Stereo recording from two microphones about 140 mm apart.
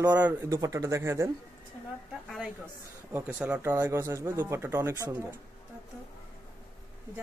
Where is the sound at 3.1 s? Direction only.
10° right (ahead or behind).